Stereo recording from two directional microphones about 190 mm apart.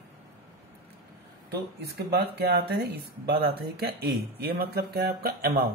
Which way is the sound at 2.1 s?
55° right (ahead or behind).